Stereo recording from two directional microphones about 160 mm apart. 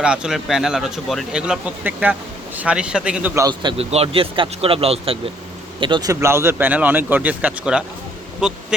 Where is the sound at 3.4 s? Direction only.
30° right (ahead or behind).